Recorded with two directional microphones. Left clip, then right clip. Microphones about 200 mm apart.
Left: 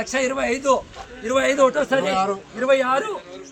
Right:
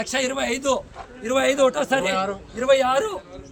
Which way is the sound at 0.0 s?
40° right (ahead or behind).